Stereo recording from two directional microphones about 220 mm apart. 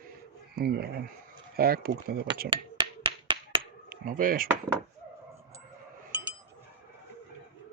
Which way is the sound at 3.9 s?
40° right (ahead or behind).